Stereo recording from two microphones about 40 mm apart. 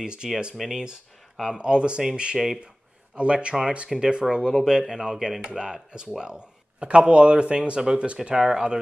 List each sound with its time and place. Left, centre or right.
0.0 s speech: right
2.3 s speech: centre
3.2 s speech: right